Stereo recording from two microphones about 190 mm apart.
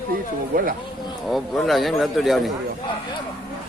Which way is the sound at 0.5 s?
45° right (ahead or behind).